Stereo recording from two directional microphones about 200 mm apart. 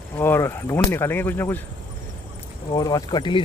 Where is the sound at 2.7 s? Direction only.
20° left (ahead or behind).